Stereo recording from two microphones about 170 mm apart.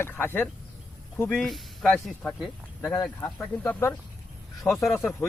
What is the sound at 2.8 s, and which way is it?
Speech, 15° left (ahead or behind).